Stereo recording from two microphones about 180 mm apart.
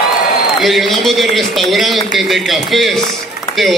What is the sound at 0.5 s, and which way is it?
A man's voice, centre (ahead or behind).